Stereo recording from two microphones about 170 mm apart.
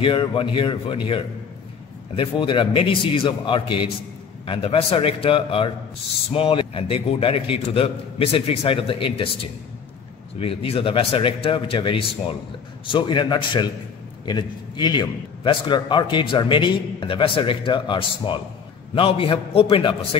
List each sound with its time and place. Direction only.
0.0 s a man's voice: 30° left (ahead or behind)